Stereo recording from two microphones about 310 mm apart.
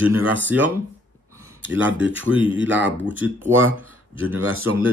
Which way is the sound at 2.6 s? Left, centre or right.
Right.